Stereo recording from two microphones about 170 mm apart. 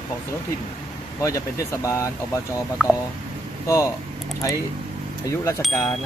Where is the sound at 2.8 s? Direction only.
Centre (ahead or behind).